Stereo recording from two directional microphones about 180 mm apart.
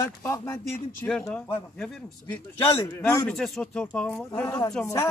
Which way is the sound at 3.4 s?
5° left (ahead or behind).